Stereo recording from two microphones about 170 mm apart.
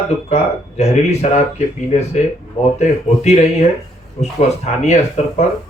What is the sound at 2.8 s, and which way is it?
A man's voice, 40° left (ahead or behind).